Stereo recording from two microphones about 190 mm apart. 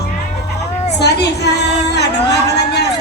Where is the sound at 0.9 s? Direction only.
60° left (ahead or behind).